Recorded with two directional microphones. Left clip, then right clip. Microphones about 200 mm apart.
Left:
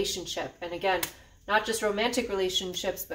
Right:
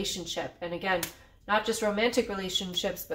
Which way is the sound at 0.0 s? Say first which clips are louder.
Left 2 dB; 20° right (ahead or behind).